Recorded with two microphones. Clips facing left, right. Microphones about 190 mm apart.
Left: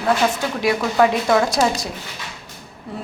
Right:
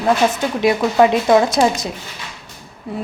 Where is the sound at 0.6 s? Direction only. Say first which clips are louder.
Right 3 dB; 25° right (ahead or behind).